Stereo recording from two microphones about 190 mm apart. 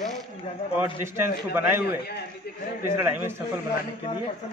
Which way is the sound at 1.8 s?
60° left (ahead or behind).